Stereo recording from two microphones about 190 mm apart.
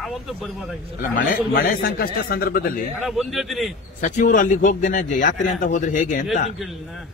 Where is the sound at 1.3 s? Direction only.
50° left (ahead or behind).